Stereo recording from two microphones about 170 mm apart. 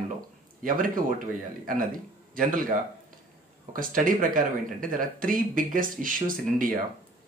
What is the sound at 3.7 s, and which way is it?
Speech, 55° right (ahead or behind).